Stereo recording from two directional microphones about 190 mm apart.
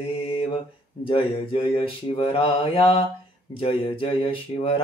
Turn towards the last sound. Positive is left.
turn(degrees=30)  # may be behind; listen again after turning